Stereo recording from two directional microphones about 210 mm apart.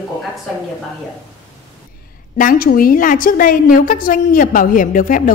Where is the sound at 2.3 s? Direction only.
40° left (ahead or behind).